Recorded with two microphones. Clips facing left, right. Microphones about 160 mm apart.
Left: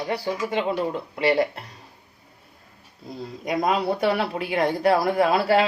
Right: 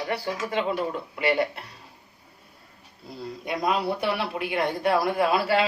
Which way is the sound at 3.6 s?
45° left (ahead or behind).